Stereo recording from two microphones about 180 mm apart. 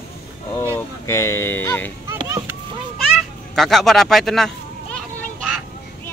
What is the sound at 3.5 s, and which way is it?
Speech, centre (ahead or behind).